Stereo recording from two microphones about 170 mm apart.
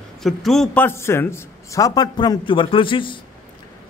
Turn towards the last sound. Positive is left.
turn(degrees=30)  # may be behind; listen again after turning